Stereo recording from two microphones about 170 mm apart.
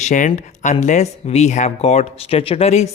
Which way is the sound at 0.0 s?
45° left (ahead or behind).